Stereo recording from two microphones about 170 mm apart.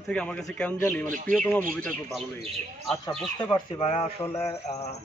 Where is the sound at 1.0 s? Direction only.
50° right (ahead or behind).